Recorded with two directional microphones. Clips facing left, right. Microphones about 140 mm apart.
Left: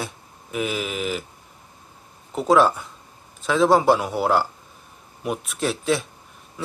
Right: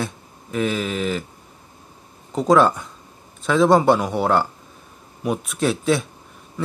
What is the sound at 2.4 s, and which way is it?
Speech, 5° left (ahead or behind).